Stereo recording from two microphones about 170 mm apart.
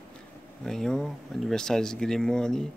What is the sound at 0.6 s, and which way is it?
Speech, 5° left (ahead or behind).